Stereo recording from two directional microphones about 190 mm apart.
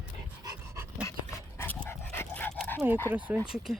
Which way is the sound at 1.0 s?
15° left (ahead or behind).